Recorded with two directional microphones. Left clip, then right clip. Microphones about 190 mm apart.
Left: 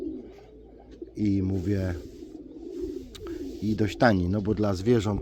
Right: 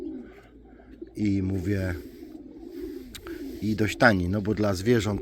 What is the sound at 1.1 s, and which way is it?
Speech, 5° right (ahead or behind).